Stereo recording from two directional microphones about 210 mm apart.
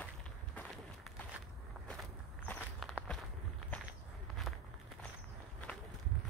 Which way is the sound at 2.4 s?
Centre (ahead or behind).